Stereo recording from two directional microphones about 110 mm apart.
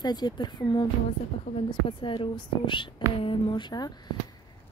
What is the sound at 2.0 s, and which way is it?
A woman's voice, 50° left (ahead or behind).